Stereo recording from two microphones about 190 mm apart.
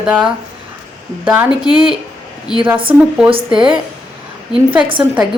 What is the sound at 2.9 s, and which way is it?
Speech, 10° right (ahead or behind).